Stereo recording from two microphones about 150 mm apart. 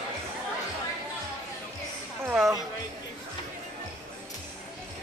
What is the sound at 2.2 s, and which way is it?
Music, centre (ahead or behind).